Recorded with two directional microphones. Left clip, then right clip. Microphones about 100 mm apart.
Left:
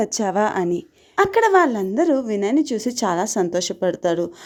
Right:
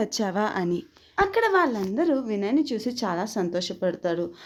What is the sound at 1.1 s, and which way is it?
A woman's voice, 60° left (ahead or behind).